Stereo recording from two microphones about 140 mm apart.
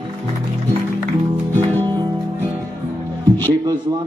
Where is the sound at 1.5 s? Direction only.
15° left (ahead or behind).